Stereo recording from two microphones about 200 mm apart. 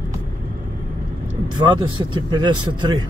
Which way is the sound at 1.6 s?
20° right (ahead or behind).